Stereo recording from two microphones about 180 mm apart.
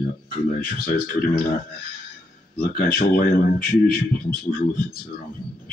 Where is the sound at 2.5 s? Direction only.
50° left (ahead or behind).